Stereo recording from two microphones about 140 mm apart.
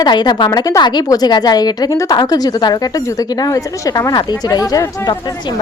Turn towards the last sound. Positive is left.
turn(degrees=25)  # may be behind; listen again after turning